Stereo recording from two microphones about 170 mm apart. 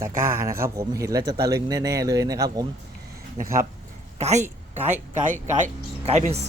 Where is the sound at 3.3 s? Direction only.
55° right (ahead or behind).